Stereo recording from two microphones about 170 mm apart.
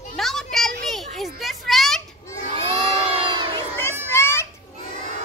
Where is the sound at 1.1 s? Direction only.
Centre (ahead or behind).